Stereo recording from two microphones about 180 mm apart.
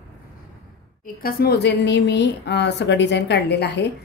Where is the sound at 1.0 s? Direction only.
60° left (ahead or behind).